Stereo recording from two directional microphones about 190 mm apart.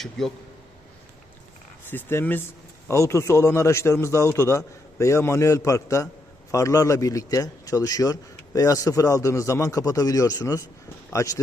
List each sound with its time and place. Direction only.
0.0 s a man's voice: centre (ahead or behind)
1.9 s a man's voice: 10° left (ahead or behind)